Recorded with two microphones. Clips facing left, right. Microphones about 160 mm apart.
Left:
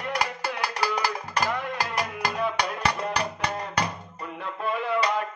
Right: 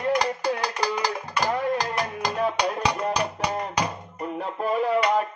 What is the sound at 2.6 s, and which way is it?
Music, 15° right (ahead or behind).